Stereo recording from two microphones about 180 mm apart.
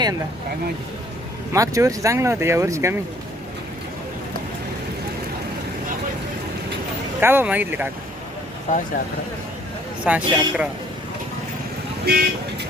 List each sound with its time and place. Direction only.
1.5 s speech: 20° right (ahead or behind)
7.2 s speech: 10° right (ahead or behind)
8.7 s speech: 40° left (ahead or behind)
10.0 s speech: 5° right (ahead or behind)
12.1 s speech: 65° right (ahead or behind)